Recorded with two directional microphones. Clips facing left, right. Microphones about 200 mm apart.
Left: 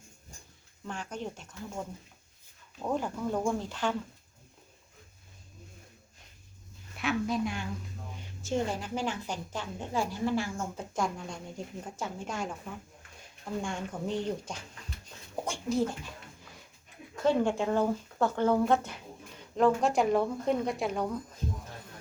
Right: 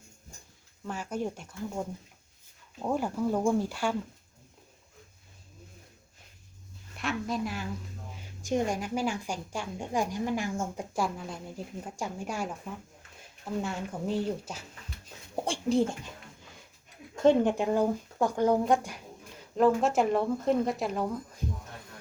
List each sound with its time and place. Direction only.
0.9 s a woman's voice: 10° right (ahead or behind)
2.8 s a woman's voice: 10° right (ahead or behind)
6.9 s speech: centre (ahead or behind)
8.4 s a woman's voice: 15° right (ahead or behind)
13.6 s a woman's voice: 5° right (ahead or behind)
15.4 s speech: 30° right (ahead or behind)
17.2 s a woman's voice: 20° right (ahead or behind)
19.5 s speech: centre (ahead or behind)